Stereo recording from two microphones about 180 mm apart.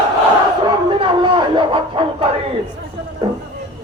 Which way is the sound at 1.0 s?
25° right (ahead or behind).